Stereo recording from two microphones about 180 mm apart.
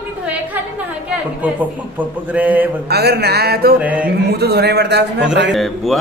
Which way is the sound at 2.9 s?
65° right (ahead or behind).